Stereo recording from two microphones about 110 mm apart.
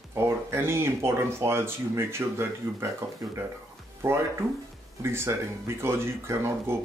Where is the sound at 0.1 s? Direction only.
20° right (ahead or behind).